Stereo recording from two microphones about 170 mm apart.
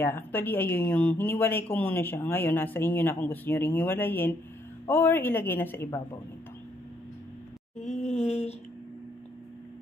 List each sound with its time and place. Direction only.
0.0 s speech: 10° left (ahead or behind)
7.8 s groan: 45° left (ahead or behind)